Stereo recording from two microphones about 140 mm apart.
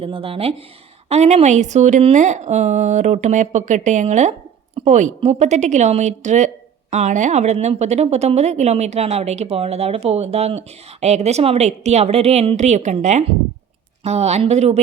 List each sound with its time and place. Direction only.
0.0 s a woman's voice: 40° right (ahead or behind)